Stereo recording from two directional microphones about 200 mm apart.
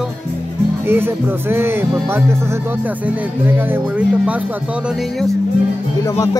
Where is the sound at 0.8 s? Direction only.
10° right (ahead or behind).